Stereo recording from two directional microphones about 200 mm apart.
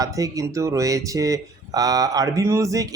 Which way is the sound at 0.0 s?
15° right (ahead or behind).